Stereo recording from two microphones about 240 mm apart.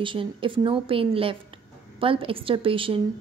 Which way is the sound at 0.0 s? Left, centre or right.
Right.